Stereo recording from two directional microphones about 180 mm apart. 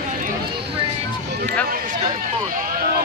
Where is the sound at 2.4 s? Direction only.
50° right (ahead or behind).